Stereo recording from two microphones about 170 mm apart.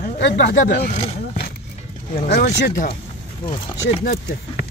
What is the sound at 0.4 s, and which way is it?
Speech, 80° left.